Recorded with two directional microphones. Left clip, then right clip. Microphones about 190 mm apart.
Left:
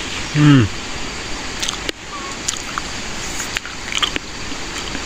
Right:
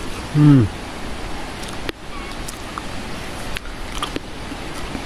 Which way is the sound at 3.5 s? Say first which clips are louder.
Left 9 dB; 25° right (ahead or behind).